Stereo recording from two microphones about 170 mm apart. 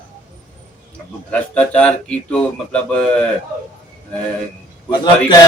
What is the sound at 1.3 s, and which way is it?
Speech, 10° left (ahead or behind).